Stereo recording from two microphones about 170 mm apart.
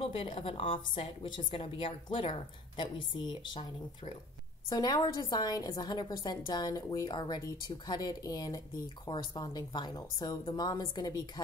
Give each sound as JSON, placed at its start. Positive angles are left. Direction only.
{"t": 0.0, "sound": "a woman's voice", "side_deg": 35}
{"t": 4.6, "sound": "a woman's voice", "side_deg": 25}